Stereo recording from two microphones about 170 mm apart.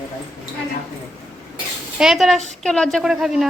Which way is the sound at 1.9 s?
5° right (ahead or behind).